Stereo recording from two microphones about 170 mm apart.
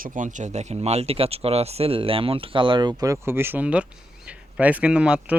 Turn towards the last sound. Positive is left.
turn(degrees=-5)  # may be behind; listen again after turning